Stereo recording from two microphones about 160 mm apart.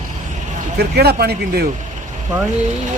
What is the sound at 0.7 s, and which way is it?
Speech, 85° right.